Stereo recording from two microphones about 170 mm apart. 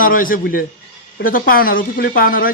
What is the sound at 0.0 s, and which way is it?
Speech, 55° left (ahead or behind).